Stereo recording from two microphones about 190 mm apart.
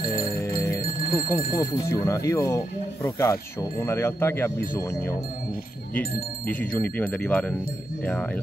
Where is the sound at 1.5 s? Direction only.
20° left (ahead or behind).